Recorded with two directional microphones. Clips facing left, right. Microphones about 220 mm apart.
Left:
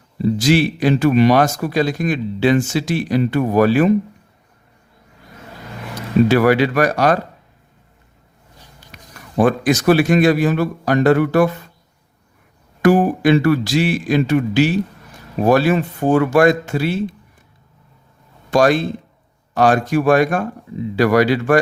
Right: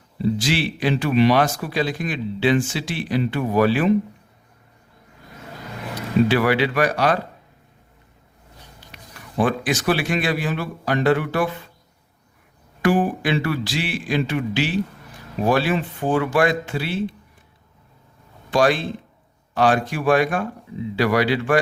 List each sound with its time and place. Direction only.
0.3 s speech: 45° left (ahead or behind)
6.2 s speech: 45° left (ahead or behind)
8.9 s a man's voice: 45° left (ahead or behind)
12.8 s speech: 40° left (ahead or behind)
18.5 s speech: 45° left (ahead or behind)